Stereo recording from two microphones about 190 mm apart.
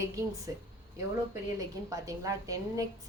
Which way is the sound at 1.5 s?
20° right (ahead or behind).